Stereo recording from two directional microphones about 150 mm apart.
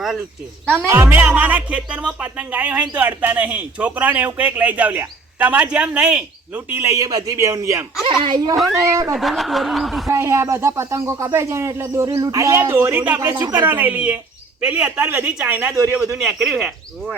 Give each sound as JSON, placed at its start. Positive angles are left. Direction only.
{"t": 0.9, "sound": "speech", "side_deg": -15}
{"t": 8.0, "sound": "speech", "side_deg": -30}
{"t": 9.1, "sound": "speech", "side_deg": 0}
{"t": 10.1, "sound": "speech", "side_deg": -20}